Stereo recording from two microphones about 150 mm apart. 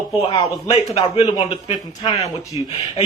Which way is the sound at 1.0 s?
40° left (ahead or behind).